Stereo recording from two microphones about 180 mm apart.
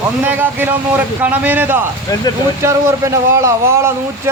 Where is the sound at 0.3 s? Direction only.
10° right (ahead or behind).